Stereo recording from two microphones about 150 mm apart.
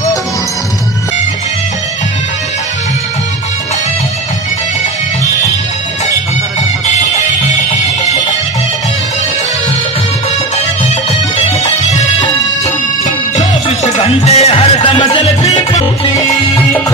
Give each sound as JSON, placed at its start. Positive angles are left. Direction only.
{"t": 11.6, "sound": "music", "side_deg": 50}
{"t": 13.4, "sound": "music", "side_deg": 45}
{"t": 16.2, "sound": "music", "side_deg": 25}